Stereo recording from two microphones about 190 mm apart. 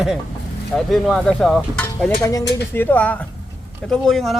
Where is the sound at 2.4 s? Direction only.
65° left (ahead or behind).